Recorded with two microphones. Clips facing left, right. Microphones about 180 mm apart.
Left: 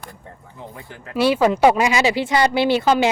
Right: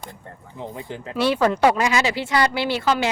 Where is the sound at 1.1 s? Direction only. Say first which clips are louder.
Left 3 dB; 10° left (ahead or behind).